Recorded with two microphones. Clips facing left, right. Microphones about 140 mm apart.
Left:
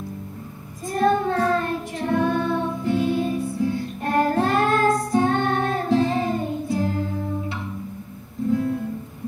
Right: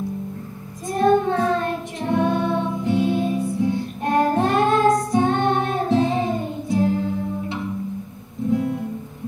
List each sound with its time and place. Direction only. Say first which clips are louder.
0.8 s child singing: right 3 dB; 20° right (ahead or behind)
2.0 s music: right 1 dB; 20° right (ahead or behind)